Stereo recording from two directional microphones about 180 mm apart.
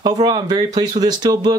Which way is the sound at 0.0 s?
25° right (ahead or behind).